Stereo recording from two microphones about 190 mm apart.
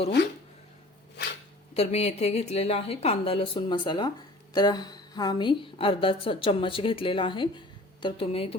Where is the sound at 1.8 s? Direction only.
35° left (ahead or behind).